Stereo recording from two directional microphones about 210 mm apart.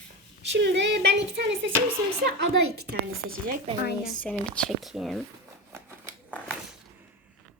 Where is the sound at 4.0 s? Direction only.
5° left (ahead or behind).